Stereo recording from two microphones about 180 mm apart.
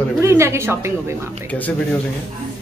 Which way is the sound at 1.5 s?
10° left (ahead or behind).